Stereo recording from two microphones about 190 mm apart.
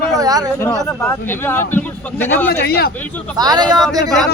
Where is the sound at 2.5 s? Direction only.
55° left (ahead or behind).